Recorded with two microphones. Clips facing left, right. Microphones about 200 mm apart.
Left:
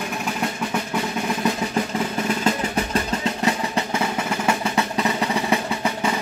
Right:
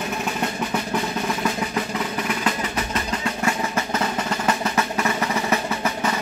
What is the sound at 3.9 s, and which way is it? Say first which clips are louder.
Drum roll: left 1 dB; 15° left (ahead or behind).